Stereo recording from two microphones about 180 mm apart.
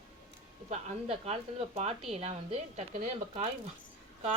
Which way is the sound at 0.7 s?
35° right (ahead or behind).